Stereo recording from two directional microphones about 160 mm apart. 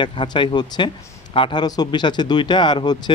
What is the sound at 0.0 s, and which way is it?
Speech, 30° left (ahead or behind).